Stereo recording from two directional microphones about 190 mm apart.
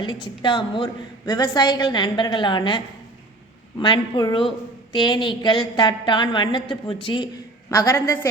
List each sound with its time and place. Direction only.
0.0 s a woman's voice: 25° left (ahead or behind)
7.7 s a woman's voice: 15° left (ahead or behind)